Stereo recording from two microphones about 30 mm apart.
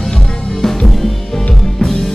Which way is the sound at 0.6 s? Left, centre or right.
Centre.